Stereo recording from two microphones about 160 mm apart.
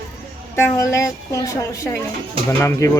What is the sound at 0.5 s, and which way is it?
Speech, 15° left (ahead or behind).